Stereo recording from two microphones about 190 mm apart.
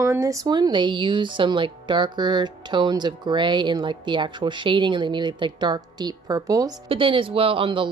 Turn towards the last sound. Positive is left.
turn(degrees=-25)  # may be behind; listen again after turning